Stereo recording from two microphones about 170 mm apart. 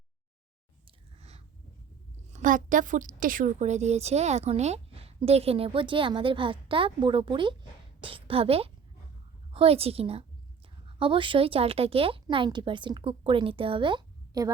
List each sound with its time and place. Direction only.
0.9 s chewing: 40° right (ahead or behind)
2.3 s a woman's voice: 50° right (ahead or behind); by 14.5 s 25° right (ahead or behind)